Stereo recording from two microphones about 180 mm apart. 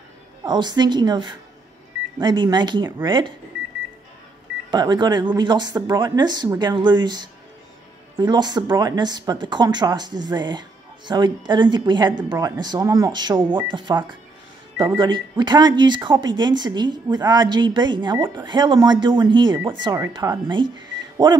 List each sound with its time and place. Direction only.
0.4 s a woman's voice: 25° right (ahead or behind)
4.6 s a woman's voice: 25° right (ahead or behind)